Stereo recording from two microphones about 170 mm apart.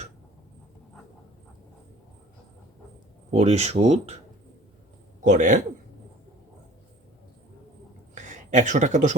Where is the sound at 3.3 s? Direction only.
40° right (ahead or behind).